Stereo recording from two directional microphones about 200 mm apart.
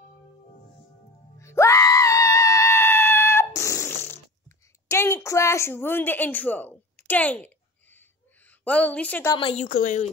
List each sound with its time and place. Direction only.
1.4 s screaming: 15° left (ahead or behind)
9.3 s a woman's voice: 25° left (ahead or behind)
9.7 s a woman's voice: 40° left (ahead or behind)